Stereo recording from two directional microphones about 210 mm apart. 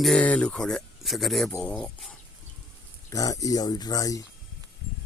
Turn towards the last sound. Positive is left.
turn(degrees=15)  # may be behind; listen again after turning